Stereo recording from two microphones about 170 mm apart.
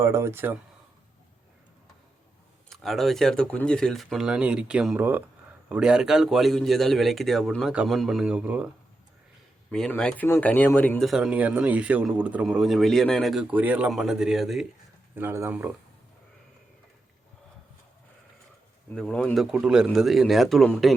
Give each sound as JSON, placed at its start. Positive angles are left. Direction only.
{"t": 0.0, "sound": "speech", "side_deg": -15}
{"t": 2.6, "sound": "speech", "side_deg": 0}
{"t": 9.7, "sound": "speech", "side_deg": 5}
{"t": 11.1, "sound": "speech", "side_deg": -5}
{"t": 15.1, "sound": "speech", "side_deg": -15}
{"t": 18.9, "sound": "speech", "side_deg": 5}